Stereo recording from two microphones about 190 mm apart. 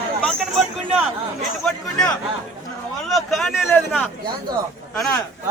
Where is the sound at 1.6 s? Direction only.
5° left (ahead or behind).